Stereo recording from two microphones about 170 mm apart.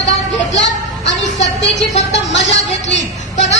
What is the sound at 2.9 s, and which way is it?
Speech, 90° left.